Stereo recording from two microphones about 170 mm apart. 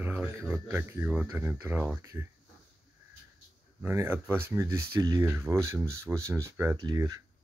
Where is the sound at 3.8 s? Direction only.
15° right (ahead or behind).